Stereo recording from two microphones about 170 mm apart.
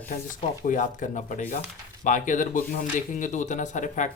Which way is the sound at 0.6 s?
50° left (ahead or behind).